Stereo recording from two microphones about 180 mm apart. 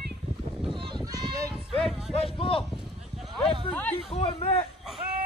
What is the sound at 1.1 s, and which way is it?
Run, 20° right (ahead or behind).